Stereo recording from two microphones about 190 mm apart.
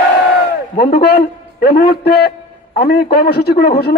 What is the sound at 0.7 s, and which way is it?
A man's voice, 55° left (ahead or behind).